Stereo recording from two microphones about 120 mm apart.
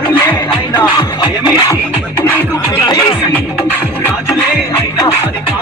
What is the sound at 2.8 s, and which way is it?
Music, 30° left (ahead or behind).